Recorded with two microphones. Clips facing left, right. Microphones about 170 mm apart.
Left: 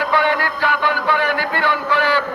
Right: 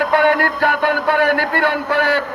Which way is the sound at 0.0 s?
50° right (ahead or behind).